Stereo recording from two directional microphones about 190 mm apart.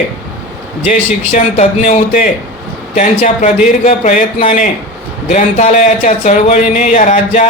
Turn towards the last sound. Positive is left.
turn(degrees=40)  # may be behind; listen again after turning